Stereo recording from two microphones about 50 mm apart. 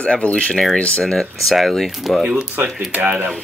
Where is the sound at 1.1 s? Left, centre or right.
Centre.